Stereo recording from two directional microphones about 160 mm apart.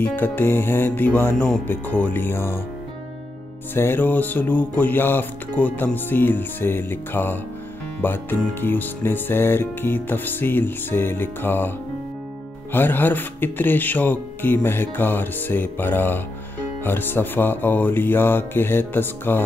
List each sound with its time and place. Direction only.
0.0 s speech: 15° left (ahead or behind)
3.7 s speech: 15° left (ahead or behind)
12.7 s speech: 10° left (ahead or behind)